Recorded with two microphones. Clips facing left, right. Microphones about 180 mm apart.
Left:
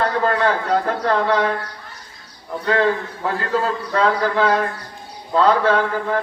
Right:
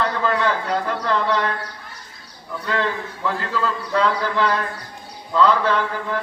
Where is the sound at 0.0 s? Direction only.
50° left (ahead or behind).